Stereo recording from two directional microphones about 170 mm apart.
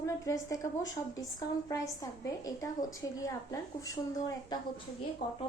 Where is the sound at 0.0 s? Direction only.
20° left (ahead or behind).